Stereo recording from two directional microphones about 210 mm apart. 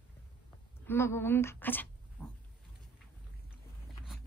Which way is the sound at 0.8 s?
10° left (ahead or behind).